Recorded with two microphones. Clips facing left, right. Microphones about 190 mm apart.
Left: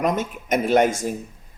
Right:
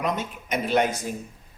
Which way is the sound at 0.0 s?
45° left (ahead or behind).